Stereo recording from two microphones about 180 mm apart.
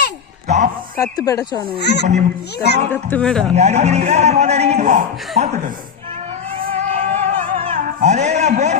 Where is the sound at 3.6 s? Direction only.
40° right (ahead or behind).